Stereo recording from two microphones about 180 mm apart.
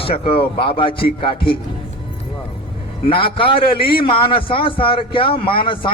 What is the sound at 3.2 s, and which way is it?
A man's voice, 30° left (ahead or behind).